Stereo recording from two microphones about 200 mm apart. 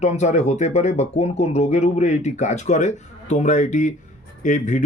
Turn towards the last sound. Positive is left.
turn(degrees=40)  # may be behind; listen again after turning